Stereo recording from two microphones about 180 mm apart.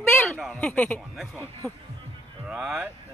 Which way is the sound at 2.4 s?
Centre (ahead or behind).